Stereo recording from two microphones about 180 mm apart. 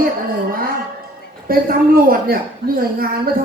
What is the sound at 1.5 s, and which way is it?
Speech, 55° right (ahead or behind).